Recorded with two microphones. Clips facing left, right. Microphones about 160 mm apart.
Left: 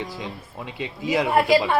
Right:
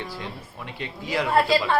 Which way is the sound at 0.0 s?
15° left (ahead or behind).